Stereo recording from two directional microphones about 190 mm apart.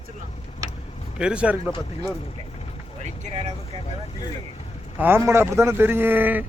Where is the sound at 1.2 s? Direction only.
5° right (ahead or behind).